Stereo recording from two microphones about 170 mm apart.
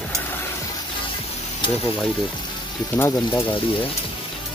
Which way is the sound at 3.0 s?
15° left (ahead or behind).